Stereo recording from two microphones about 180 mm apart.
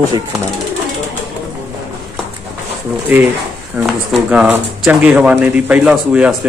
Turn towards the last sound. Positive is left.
turn(degrees=-5)  # may be behind; listen again after turning